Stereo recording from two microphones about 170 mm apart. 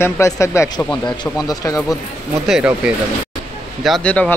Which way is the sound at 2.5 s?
5° right (ahead or behind).